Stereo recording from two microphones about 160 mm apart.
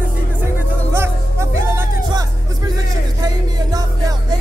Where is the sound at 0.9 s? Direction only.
15° right (ahead or behind).